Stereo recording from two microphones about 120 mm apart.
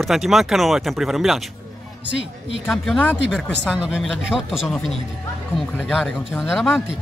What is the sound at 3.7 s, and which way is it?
Speech, 10° right (ahead or behind).